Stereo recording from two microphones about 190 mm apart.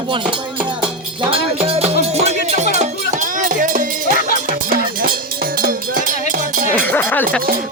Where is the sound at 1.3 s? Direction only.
30° right (ahead or behind).